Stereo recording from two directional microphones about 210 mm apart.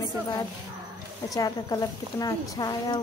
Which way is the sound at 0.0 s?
20° left (ahead or behind).